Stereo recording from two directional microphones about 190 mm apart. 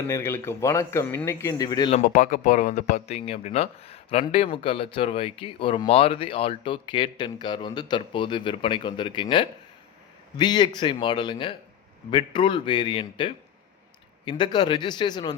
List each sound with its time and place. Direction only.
0.1 s speech: 15° left (ahead or behind)
2.0 s speech: 45° left (ahead or behind); by 15.4 s 20° left (ahead or behind)